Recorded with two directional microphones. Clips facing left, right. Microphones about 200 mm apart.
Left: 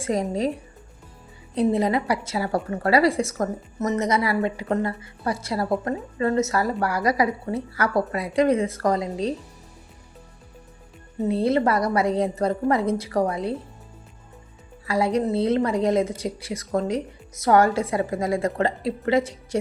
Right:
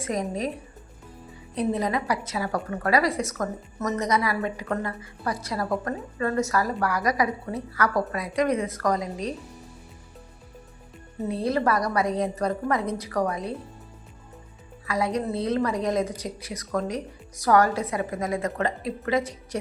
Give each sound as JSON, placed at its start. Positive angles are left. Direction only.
{"t": 0.0, "sound": "speech", "side_deg": 30}
{"t": 1.5, "sound": "a woman's voice", "side_deg": 30}
{"t": 11.3, "sound": "a woman's voice", "side_deg": 25}
{"t": 14.8, "sound": "a woman's voice", "side_deg": 30}